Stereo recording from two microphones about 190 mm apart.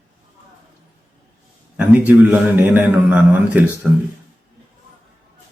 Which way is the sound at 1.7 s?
10° right (ahead or behind).